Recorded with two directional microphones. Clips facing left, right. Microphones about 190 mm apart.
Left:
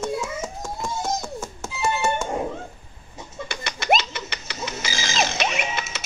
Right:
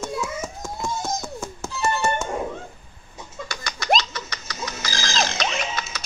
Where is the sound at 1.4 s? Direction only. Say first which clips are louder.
Right 1 dB; 10° left (ahead or behind).